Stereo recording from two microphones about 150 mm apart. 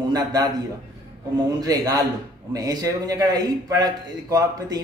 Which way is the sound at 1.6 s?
25° right (ahead or behind).